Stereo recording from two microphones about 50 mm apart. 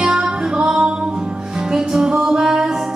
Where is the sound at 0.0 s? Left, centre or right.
Centre.